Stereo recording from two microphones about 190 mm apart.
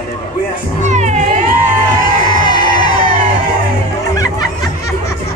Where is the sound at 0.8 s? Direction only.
40° right (ahead or behind).